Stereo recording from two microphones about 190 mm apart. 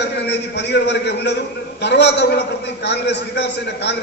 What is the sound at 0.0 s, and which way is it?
A man's voice, 60° left (ahead or behind).